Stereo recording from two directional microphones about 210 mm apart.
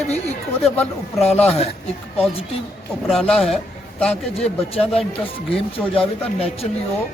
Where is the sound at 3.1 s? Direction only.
Centre (ahead or behind).